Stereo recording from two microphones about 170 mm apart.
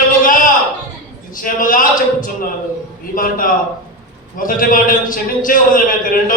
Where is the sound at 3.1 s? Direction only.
55° left (ahead or behind).